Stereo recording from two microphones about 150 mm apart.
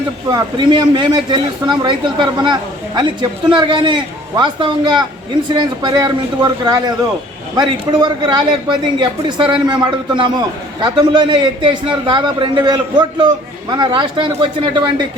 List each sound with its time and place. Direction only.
0.3 s a man's voice: 30° right (ahead or behind)